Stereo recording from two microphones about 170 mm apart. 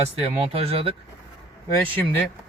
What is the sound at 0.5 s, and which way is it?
Speech, 35° right (ahead or behind).